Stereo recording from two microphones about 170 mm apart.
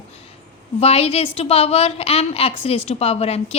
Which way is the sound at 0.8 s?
35° left (ahead or behind).